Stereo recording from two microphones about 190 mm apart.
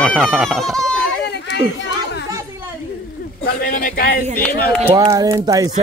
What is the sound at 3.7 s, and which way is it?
Speech, 45° left (ahead or behind).